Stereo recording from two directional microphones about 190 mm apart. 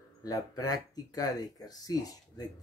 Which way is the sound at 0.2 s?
20° left (ahead or behind).